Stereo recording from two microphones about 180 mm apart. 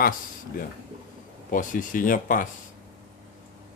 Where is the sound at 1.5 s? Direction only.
45° left (ahead or behind).